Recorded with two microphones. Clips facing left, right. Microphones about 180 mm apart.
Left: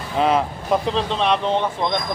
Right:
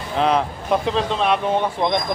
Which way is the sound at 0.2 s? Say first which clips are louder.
Even; centre (ahead or behind).